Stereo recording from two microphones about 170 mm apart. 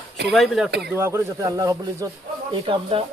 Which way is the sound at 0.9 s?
15° right (ahead or behind).